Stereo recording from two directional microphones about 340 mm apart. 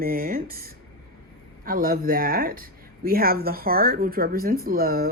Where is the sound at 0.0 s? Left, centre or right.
Right.